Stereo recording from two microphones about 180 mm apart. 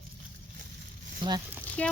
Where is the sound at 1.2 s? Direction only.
25° right (ahead or behind).